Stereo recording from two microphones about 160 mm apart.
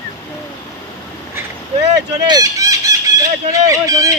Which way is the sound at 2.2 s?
25° right (ahead or behind).